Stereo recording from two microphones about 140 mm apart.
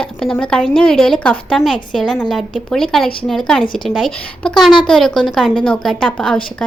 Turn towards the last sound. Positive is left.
turn(degrees=0)  # may be behind; listen again after turning